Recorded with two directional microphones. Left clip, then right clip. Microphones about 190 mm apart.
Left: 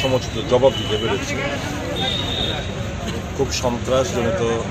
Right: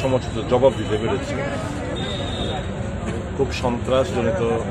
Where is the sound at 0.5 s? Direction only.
10° right (ahead or behind).